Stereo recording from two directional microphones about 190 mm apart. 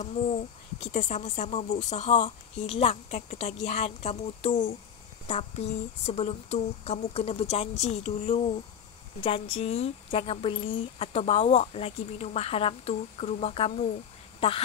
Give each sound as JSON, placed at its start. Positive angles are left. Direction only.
{"t": 0.0, "sound": "a sound", "side_deg": 35}
{"t": 0.9, "sound": "speech", "side_deg": 40}
{"t": 5.3, "sound": "speech", "side_deg": 35}